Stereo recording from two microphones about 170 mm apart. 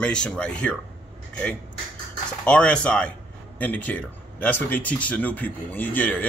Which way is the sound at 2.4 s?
5° left (ahead or behind).